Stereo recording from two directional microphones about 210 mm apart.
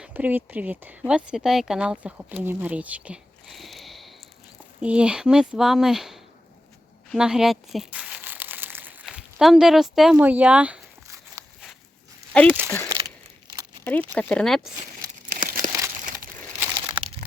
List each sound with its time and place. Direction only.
0.0 s speech: 5° right (ahead or behind)
7.1 s crumpling: 5° right (ahead or behind)
12.3 s speech: 5° left (ahead or behind)
14.1 s speech: 5° left (ahead or behind)
15.4 s crumpling: 40° right (ahead or behind)
16.1 s crumpling: 15° right (ahead or behind)